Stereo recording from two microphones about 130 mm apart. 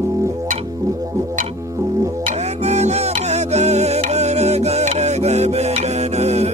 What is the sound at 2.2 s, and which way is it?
Music, 60° right (ahead or behind).